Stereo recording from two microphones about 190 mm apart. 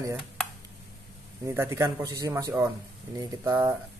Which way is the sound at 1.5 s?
15° right (ahead or behind).